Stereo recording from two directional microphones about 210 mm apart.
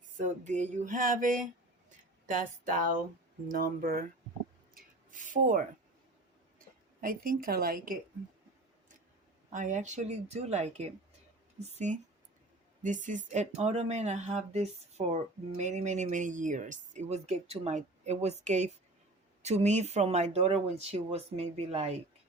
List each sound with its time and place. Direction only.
0.3 s speech: 35° right (ahead or behind)
4.7 s rub: 40° right (ahead or behind)
7.0 s speech: 40° right (ahead or behind)
9.5 s speech: 35° right (ahead or behind)